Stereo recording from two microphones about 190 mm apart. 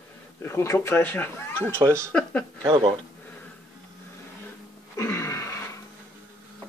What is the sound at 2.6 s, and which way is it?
Speech, 25° right (ahead or behind).